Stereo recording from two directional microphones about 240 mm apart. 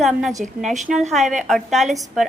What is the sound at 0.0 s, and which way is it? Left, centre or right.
Speech, centre.